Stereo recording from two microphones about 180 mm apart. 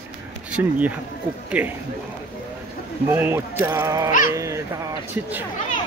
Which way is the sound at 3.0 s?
10° right (ahead or behind).